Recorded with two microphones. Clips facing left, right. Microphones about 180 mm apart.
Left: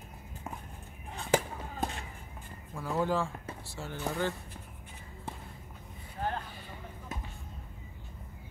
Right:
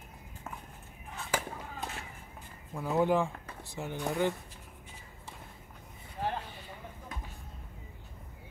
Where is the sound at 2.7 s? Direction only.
20° right (ahead or behind).